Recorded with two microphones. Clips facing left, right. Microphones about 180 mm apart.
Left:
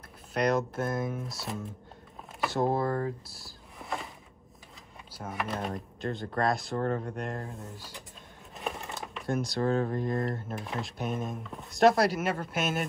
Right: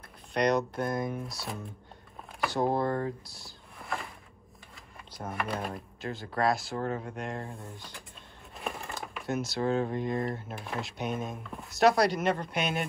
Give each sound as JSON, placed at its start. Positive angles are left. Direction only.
{"t": 0.3, "sound": "speech", "side_deg": 5}
{"t": 5.3, "sound": "speech", "side_deg": 0}
{"t": 6.8, "sound": "speech", "side_deg": 35}
{"t": 7.2, "sound": "speech", "side_deg": 0}